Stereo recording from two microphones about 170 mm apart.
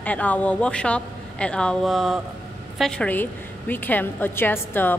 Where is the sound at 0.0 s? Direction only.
10° left (ahead or behind).